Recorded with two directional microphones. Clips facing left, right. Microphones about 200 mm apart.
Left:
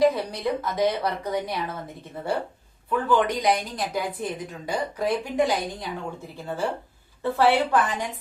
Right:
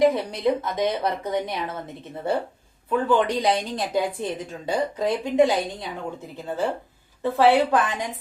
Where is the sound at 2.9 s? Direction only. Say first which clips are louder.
Right 2 dB; 25° right (ahead or behind).